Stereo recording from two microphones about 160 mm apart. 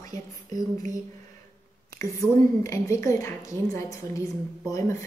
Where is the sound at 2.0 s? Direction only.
20° left (ahead or behind).